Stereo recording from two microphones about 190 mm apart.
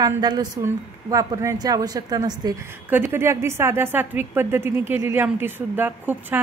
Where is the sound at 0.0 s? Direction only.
20° right (ahead or behind).